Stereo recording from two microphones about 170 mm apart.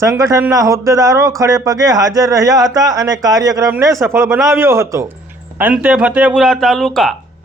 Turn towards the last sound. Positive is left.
turn(degrees=0)  # may be behind; listen again after turning